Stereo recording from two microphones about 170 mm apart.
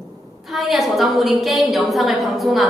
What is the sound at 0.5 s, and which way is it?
A woman's voice, centre (ahead or behind).